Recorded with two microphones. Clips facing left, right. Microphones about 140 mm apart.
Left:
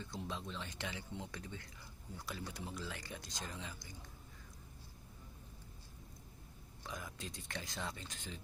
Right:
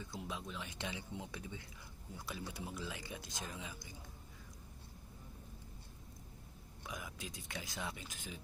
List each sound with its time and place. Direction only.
0.0 s speech: 10° right (ahead or behind)
6.8 s speech: 5° right (ahead or behind)